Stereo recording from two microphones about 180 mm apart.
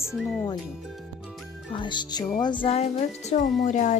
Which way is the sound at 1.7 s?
25° left (ahead or behind).